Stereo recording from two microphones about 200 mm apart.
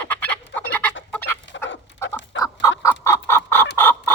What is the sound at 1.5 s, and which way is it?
Dog, 65° left (ahead or behind).